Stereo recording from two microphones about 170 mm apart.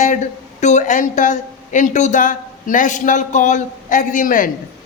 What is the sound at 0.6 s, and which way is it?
A man's voice, 45° left (ahead or behind).